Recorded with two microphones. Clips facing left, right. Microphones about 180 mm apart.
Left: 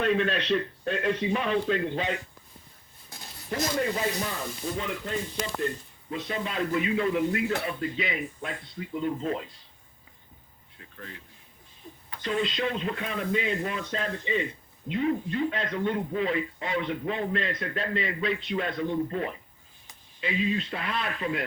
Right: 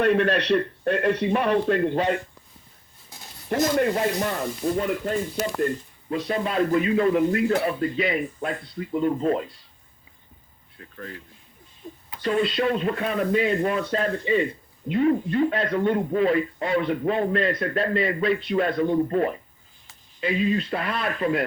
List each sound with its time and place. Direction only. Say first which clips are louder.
0.0 s a man's voice: right 5 dB; 60° right (ahead or behind)
3.5 s speech: right 7 dB; 55° right (ahead or behind)
10.8 s a sound: right 6 dB; 50° right (ahead or behind)
12.2 s speech: right 6 dB; 50° right (ahead or behind)